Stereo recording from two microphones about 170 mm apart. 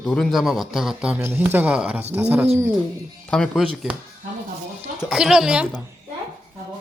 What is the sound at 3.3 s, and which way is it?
Speech, 5° left (ahead or behind).